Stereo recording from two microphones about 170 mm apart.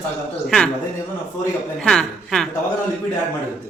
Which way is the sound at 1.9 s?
5° left (ahead or behind).